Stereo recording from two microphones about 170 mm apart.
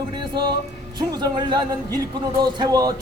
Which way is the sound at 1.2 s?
25° right (ahead or behind).